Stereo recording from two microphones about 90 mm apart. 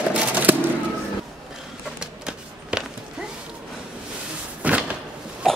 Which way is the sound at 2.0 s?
10° right (ahead or behind).